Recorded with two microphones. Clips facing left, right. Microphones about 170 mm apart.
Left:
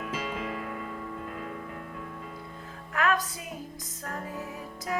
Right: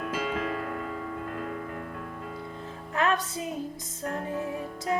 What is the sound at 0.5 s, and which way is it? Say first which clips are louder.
Music: right 3 dB; centre (ahead or behind).